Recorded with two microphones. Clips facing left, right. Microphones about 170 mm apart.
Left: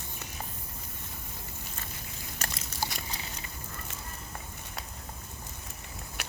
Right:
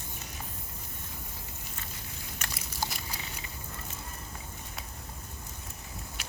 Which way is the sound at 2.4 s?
35° left (ahead or behind).